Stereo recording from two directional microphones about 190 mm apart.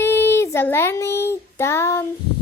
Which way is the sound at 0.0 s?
10° left (ahead or behind).